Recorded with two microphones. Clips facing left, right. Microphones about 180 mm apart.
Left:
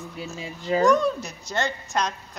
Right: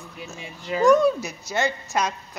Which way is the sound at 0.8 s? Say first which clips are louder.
Right 5 dB; 5° right (ahead or behind).